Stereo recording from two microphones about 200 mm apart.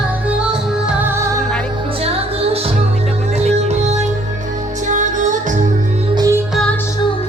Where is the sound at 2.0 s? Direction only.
30° right (ahead or behind).